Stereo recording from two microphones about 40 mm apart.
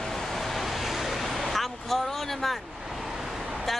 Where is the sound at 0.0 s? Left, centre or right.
Centre.